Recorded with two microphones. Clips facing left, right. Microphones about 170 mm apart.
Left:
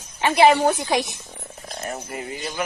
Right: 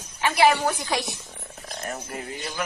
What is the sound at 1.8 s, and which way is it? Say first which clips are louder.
Speech: left 2 dB; 10° left (ahead or behind).